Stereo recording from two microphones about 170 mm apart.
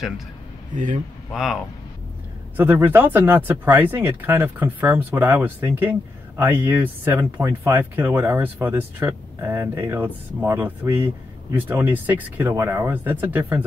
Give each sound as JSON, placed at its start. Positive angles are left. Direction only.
{"t": 0.7, "sound": "a man's voice", "side_deg": -50}
{"t": 1.3, "sound": "speech", "side_deg": 0}